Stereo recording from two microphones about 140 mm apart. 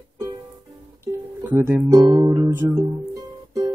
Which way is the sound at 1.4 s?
15° right (ahead or behind).